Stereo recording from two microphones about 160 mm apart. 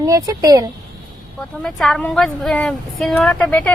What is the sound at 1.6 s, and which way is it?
A woman's voice, 5° left (ahead or behind).